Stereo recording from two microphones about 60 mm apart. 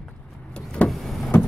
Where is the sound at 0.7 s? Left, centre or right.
Left.